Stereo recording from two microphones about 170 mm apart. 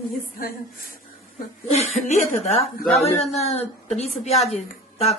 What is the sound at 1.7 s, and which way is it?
A woman's voice, 45° left (ahead or behind).